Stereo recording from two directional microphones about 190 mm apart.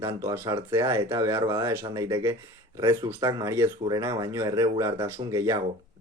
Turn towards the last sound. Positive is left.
turn(degrees=-15)  # may be behind; listen again after turning